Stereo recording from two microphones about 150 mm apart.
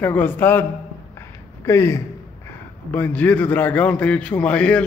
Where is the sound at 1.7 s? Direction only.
20° left (ahead or behind).